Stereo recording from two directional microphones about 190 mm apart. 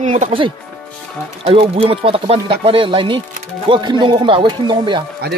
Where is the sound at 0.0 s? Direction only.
40° right (ahead or behind).